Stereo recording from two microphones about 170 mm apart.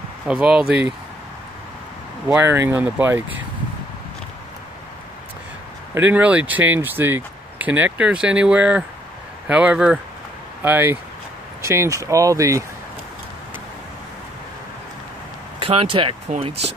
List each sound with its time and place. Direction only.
0.3 s speech: 5° right (ahead or behind)
2.2 s speech: 10° right (ahead or behind)
5.9 s speech: 10° right (ahead or behind)
15.6 s speech: 30° right (ahead or behind)